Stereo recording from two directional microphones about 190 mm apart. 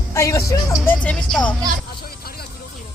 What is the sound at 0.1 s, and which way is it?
Speech, 15° left (ahead or behind).